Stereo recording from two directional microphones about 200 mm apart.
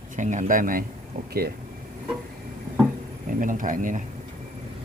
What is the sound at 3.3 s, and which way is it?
Speech, 40° right (ahead or behind).